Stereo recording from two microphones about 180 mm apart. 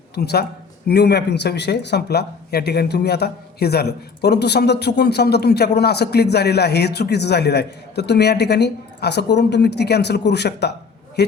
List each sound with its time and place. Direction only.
0.1 s speech: 60° left (ahead or behind)